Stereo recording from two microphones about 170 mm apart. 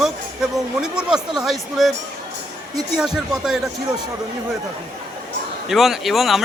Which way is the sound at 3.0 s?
5° right (ahead or behind).